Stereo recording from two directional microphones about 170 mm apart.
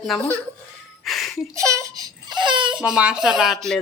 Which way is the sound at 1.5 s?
20° right (ahead or behind).